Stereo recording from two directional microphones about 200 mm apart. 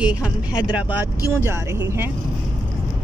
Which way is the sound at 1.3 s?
10° right (ahead or behind).